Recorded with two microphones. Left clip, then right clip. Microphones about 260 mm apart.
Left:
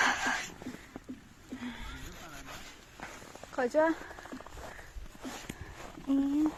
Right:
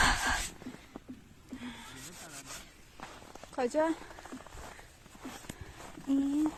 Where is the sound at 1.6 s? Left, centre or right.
Centre.